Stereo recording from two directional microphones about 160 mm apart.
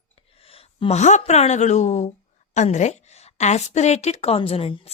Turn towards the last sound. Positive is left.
turn(degrees=35)  # may be behind; listen again after turning